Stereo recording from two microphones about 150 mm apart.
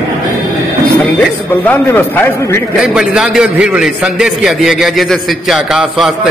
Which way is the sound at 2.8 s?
5° right (ahead or behind).